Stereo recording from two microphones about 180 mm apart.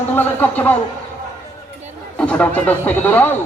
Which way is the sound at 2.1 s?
5° left (ahead or behind).